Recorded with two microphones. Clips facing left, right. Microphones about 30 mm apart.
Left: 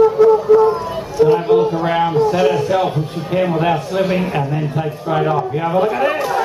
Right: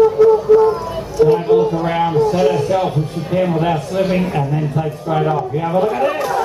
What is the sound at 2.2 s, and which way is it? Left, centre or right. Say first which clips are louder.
A man's voice: right 1 dB; left.